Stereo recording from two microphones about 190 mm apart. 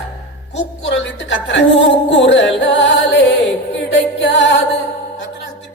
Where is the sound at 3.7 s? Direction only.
75° left (ahead or behind).